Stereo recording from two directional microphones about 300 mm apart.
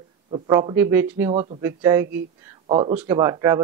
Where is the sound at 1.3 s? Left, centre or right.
Centre.